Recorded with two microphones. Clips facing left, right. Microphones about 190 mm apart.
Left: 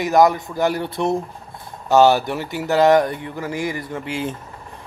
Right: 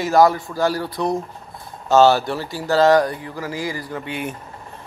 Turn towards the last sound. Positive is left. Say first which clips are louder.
# left 2 dB
turn(degrees=25)  # may be behind; listen again after turning